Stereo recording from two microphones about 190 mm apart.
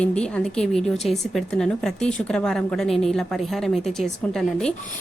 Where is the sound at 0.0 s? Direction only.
5° left (ahead or behind).